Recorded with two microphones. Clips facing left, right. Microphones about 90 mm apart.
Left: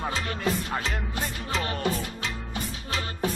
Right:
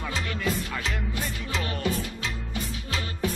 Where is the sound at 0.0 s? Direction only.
40° left (ahead or behind).